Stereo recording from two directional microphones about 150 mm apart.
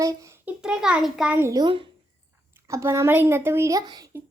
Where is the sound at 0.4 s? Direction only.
5° right (ahead or behind).